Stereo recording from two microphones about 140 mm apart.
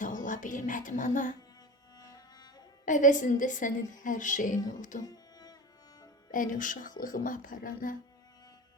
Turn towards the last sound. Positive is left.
turn(degrees=70)  # may be behind; listen again after turning